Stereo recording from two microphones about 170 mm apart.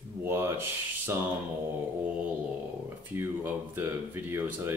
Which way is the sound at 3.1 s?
10° right (ahead or behind).